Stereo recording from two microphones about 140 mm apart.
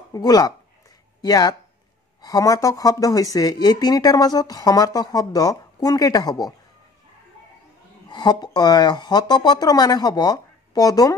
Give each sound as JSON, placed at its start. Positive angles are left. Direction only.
{"t": 0.1, "sound": "speech", "side_deg": 25}
{"t": 8.1, "sound": "speech", "side_deg": 30}